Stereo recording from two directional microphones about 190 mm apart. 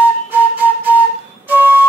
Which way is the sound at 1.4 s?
10° right (ahead or behind).